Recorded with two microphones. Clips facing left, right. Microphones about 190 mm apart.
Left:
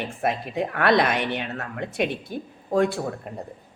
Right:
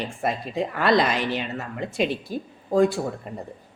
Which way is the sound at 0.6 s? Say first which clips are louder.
Even; 60° left (ahead or behind).